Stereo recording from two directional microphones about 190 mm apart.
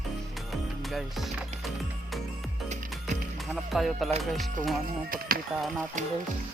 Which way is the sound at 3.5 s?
Centre (ahead or behind).